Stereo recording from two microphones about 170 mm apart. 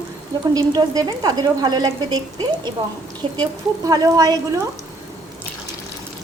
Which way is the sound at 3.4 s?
20° right (ahead or behind).